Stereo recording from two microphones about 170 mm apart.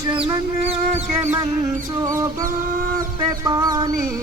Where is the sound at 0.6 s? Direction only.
40° right (ahead or behind).